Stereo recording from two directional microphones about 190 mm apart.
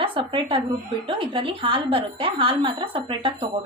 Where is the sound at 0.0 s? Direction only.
25° right (ahead or behind).